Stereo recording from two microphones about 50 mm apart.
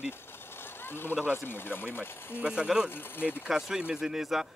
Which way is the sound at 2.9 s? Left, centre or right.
Left.